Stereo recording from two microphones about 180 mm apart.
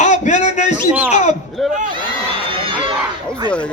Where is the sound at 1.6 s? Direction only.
Centre (ahead or behind).